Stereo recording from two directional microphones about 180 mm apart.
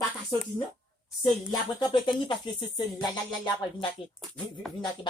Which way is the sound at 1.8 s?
25° left (ahead or behind).